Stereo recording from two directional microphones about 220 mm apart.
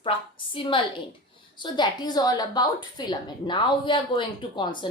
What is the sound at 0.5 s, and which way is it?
A woman's voice, 20° left (ahead or behind).